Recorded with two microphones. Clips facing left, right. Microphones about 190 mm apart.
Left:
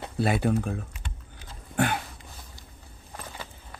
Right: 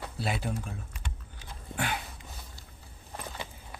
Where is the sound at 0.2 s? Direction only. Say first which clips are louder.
Left 9 dB; 55° left (ahead or behind).